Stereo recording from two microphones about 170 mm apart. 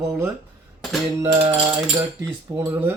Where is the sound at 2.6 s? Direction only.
15° right (ahead or behind).